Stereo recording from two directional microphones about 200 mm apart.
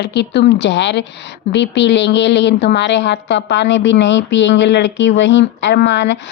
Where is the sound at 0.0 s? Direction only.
60° left (ahead or behind).